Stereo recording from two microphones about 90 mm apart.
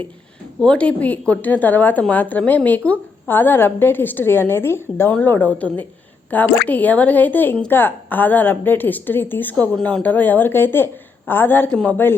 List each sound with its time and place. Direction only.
0.6 s a woman's voice: 10° left (ahead or behind)
11.7 s a woman's voice: 10° left (ahead or behind)